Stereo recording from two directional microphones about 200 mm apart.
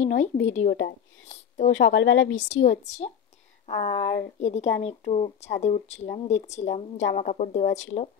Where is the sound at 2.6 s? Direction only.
35° left (ahead or behind).